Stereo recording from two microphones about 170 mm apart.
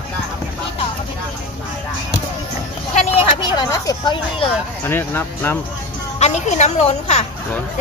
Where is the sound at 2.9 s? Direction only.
40° left (ahead or behind).